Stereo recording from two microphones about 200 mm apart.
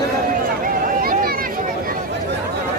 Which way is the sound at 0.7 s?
45° right (ahead or behind).